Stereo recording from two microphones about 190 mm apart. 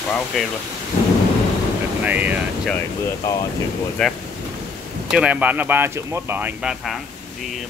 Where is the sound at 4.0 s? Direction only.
5° left (ahead or behind).